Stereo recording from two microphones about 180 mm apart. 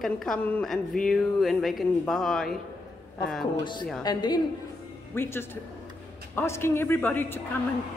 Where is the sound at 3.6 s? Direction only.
25° left (ahead or behind).